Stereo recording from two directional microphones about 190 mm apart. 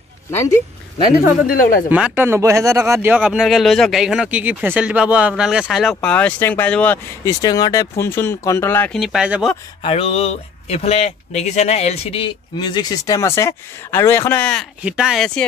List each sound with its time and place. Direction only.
1.5 s speech: 50° left (ahead or behind)
1.9 s speech: 5° right (ahead or behind); by 7.3 s 10° left (ahead or behind)
7.4 s speech: 20° left (ahead or behind)
8.9 s speech: centre (ahead or behind)
9.8 s speech: 30° left (ahead or behind); by 15.4 s 5° left (ahead or behind)